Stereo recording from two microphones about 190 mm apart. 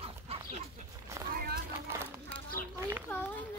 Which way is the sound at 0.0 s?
30° right (ahead or behind).